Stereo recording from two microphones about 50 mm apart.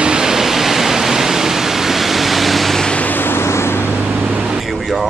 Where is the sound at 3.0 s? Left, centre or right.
Left.